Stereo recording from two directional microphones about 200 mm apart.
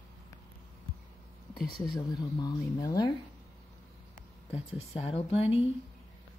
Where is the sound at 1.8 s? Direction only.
20° left (ahead or behind).